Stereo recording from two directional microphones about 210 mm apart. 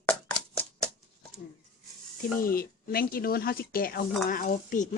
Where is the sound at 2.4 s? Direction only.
45° left (ahead or behind).